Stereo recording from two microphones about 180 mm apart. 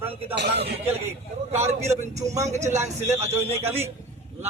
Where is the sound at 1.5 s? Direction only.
40° right (ahead or behind).